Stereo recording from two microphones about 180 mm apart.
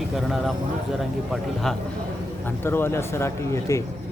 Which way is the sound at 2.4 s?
10° left (ahead or behind).